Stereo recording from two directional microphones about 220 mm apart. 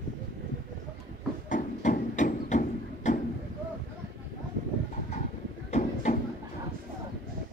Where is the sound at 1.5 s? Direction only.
35° left (ahead or behind).